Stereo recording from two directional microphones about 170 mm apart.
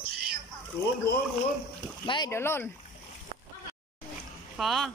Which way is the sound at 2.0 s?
25° left (ahead or behind).